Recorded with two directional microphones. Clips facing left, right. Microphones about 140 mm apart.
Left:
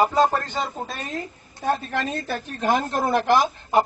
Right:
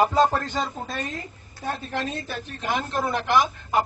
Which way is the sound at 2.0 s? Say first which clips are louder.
Left 3 dB; 45° left (ahead or behind).